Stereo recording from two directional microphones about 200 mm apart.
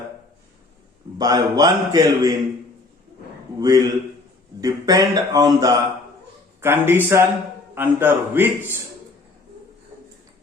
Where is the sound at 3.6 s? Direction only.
20° right (ahead or behind).